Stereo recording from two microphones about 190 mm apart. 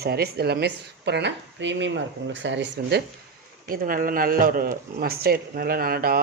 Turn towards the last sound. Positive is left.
turn(degrees=-50)  # may be behind; listen again after turning